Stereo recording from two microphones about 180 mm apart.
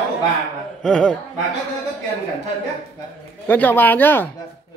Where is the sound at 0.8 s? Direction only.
5° left (ahead or behind).